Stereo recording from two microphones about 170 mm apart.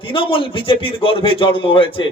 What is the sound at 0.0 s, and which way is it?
A man's voice, 30° left (ahead or behind).